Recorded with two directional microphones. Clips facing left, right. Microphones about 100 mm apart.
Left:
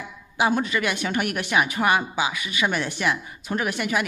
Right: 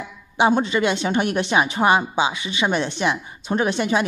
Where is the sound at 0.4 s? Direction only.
25° right (ahead or behind).